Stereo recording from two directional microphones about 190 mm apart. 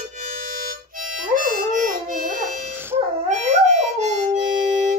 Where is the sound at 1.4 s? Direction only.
45° right (ahead or behind).